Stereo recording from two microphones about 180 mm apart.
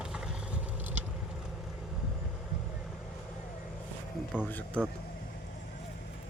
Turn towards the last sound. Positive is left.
turn(degrees=10)  # may be behind; listen again after turning